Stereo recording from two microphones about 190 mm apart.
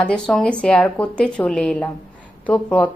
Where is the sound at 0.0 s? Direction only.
5° left (ahead or behind).